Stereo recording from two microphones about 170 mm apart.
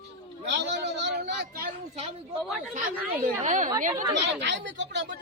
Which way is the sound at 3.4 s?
45° right (ahead or behind).